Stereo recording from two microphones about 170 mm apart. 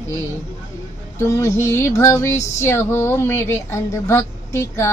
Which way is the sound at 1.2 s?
15° left (ahead or behind).